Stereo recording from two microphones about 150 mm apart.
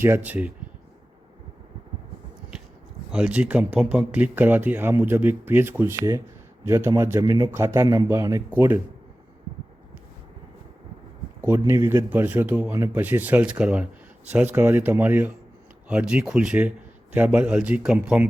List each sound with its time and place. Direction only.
0.0 s speech: 15° right (ahead or behind)
3.1 s a man's voice: 5° right (ahead or behind)
11.3 s speech: 15° right (ahead or behind)